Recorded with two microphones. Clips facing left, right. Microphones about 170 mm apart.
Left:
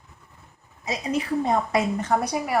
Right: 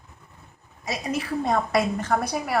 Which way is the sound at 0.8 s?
15° left (ahead or behind).